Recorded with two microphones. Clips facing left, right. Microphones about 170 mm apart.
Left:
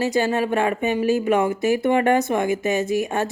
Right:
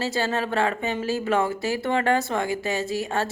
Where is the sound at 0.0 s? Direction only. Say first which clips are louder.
Left 5 dB; 15° left (ahead or behind).